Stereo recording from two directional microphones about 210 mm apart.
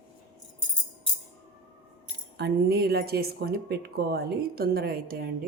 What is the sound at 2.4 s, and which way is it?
Speech, 50° right (ahead or behind).